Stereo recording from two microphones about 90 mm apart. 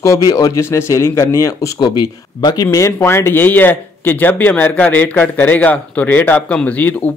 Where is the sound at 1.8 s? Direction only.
55° left (ahead or behind).